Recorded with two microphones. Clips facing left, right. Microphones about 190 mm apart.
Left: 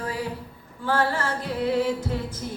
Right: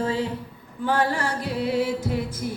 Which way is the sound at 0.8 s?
15° right (ahead or behind).